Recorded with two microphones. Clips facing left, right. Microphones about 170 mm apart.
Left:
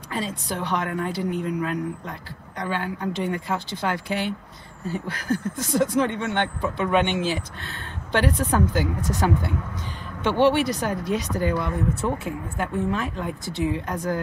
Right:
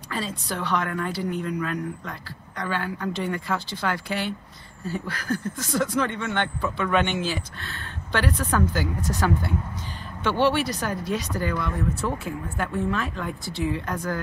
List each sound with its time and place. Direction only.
0.1 s a woman's voice: 20° left (ahead or behind)
10.2 s a woman's voice: 20° left (ahead or behind)